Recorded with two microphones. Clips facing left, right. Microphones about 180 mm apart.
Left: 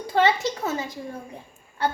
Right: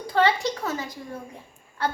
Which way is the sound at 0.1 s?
25° left (ahead or behind).